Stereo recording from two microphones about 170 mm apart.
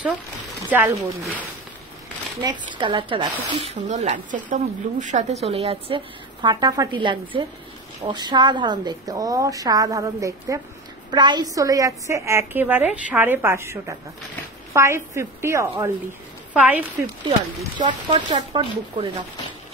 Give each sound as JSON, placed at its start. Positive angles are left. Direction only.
{"t": 0.7, "sound": "a woman's voice", "side_deg": -10}
{"t": 2.4, "sound": "a woman's voice", "side_deg": -30}
{"t": 3.9, "sound": "a woman's voice", "side_deg": -45}
{"t": 17.7, "sound": "a woman's voice", "side_deg": -25}